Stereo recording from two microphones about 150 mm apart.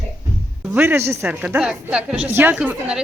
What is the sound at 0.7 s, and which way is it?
A woman's voice, 15° right (ahead or behind).